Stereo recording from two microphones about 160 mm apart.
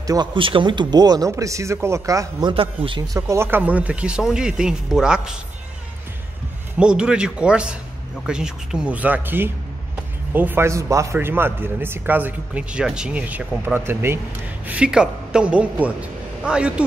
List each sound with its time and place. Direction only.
0.0 s speech: 25° right (ahead or behind)
2.5 s a man's voice: 35° right (ahead or behind); by 5.3 s 5° right (ahead or behind)
6.8 s a man's voice: 5° right (ahead or behind)